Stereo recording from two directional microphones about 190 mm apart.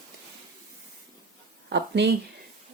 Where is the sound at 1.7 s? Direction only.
65° right (ahead or behind).